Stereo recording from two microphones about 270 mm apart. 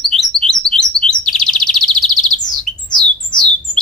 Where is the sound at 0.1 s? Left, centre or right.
Centre.